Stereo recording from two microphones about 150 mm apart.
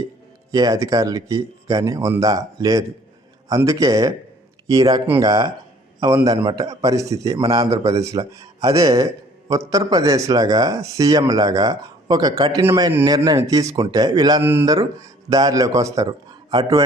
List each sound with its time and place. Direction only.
0.5 s a man's voice: 25° right (ahead or behind)